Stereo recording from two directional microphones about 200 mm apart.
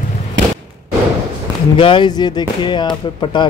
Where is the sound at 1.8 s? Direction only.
25° left (ahead or behind).